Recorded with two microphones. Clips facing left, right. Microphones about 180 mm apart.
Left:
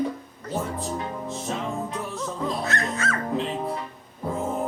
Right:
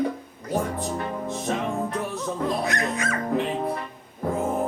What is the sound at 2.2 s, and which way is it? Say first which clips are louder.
Music: right 1 dB; 15° right (ahead or behind).